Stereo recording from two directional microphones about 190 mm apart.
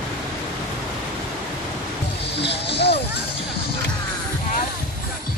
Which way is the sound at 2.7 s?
60° left (ahead or behind).